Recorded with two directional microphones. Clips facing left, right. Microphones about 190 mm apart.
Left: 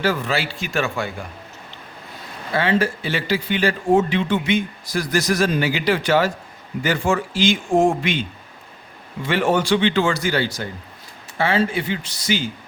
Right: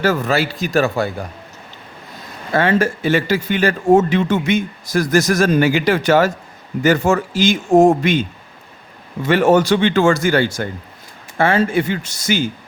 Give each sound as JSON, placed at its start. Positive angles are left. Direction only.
{"t": 0.0, "sound": "speech", "side_deg": -45}
{"t": 2.5, "sound": "speech", "side_deg": -45}